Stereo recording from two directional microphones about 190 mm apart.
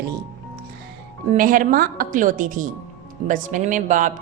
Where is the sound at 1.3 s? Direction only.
45° right (ahead or behind).